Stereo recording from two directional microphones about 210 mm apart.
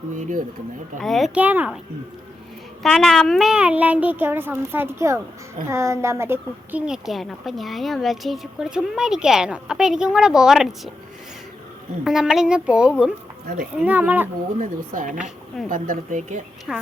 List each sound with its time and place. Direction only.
0.2 s speech: 40° right (ahead or behind)
0.9 s a woman's voice: centre (ahead or behind)
2.8 s a woman's voice: centre (ahead or behind)
12.0 s a woman's voice: centre (ahead or behind)
14.6 s speech: 40° right (ahead or behind)
16.7 s a woman's voice: 5° right (ahead or behind)